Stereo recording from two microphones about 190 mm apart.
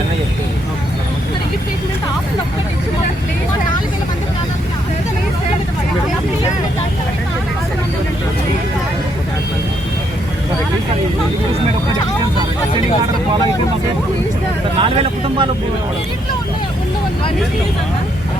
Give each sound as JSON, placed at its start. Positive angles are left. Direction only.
{"t": 14.8, "sound": "speech", "side_deg": -30}